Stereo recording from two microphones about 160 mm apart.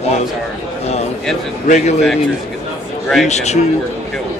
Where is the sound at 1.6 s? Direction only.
50° left (ahead or behind).